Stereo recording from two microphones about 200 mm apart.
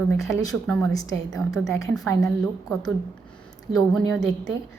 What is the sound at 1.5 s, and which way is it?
A woman's voice, centre (ahead or behind).